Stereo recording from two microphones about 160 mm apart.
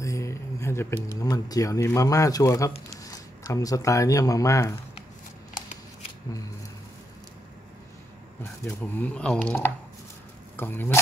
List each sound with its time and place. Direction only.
0.0 s a sound: 20° left (ahead or behind)
1.0 s speech: 25° left (ahead or behind)
8.4 s speech: 10° left (ahead or behind)